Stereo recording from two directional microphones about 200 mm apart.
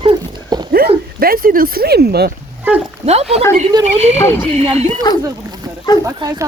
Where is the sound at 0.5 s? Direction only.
20° right (ahead or behind).